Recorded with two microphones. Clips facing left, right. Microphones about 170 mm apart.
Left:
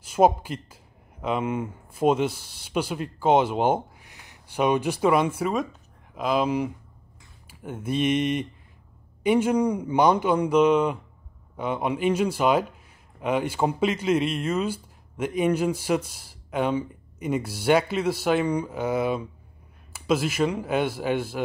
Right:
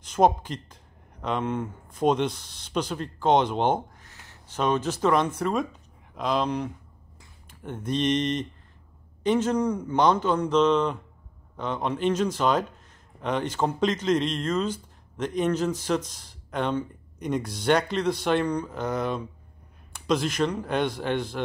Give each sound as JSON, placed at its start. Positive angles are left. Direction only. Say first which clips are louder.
{"t": 0.0, "sound": "speech", "louder": "left 2 dB", "side_deg": 10}